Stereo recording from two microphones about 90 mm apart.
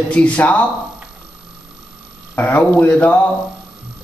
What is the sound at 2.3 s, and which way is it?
Speech, 20° left (ahead or behind).